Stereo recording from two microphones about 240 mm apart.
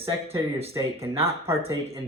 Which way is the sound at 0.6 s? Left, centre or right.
Centre.